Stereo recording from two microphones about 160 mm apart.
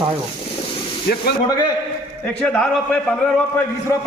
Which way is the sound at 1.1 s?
75° left (ahead or behind).